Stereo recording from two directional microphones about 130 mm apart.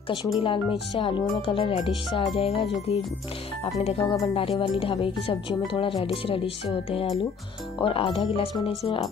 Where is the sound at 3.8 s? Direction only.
50° left (ahead or behind).